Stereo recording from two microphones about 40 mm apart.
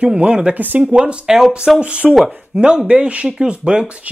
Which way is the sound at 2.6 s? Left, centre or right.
Right.